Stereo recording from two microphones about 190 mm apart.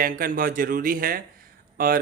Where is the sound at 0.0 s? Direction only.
50° right (ahead or behind).